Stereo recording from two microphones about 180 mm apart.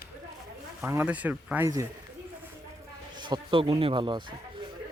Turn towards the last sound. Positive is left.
turn(degrees=-25)  # may be behind; listen again after turning